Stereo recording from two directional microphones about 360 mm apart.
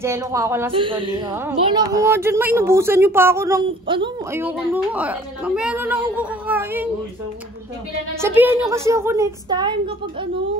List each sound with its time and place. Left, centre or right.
0.0 s a woman's voice: centre
8.2 s a woman's voice: centre